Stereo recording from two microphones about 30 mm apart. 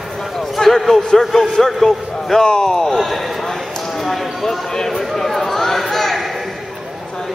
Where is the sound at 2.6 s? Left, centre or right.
Centre.